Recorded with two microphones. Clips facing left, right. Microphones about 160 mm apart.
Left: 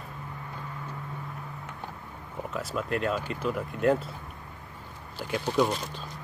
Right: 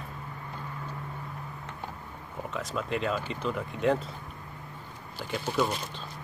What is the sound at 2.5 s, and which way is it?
Speech, 5° left (ahead or behind).